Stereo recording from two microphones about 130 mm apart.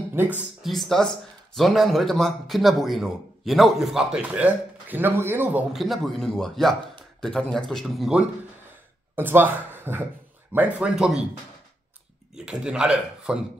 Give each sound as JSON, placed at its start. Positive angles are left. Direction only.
{"t": 0.1, "sound": "speech", "side_deg": -15}
{"t": 0.6, "sound": "speech", "side_deg": 0}
{"t": 9.1, "sound": "speech", "side_deg": -15}
{"t": 12.4, "sound": "speech", "side_deg": -5}